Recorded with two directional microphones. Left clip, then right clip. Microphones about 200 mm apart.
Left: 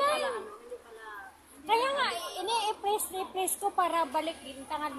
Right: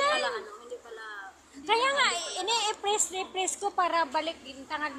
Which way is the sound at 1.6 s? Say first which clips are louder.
Right 3 dB; 5° right (ahead or behind).